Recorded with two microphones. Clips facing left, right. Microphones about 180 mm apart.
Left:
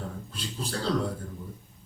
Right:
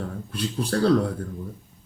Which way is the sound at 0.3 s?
60° right (ahead or behind).